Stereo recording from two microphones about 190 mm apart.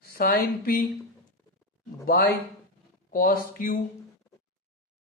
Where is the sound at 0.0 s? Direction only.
50° left (ahead or behind).